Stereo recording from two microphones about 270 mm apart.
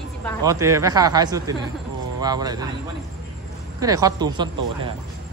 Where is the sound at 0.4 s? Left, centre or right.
Centre.